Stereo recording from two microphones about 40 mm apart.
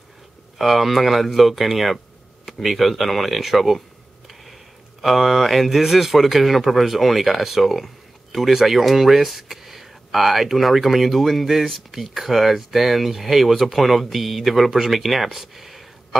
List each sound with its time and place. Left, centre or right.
0.6 s speech: centre
5.0 s speech: centre